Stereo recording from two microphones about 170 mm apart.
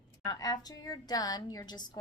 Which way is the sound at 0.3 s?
20° left (ahead or behind).